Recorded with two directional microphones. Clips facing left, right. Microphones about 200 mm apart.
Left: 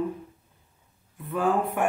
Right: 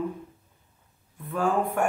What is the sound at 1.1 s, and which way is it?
Speech, centre (ahead or behind).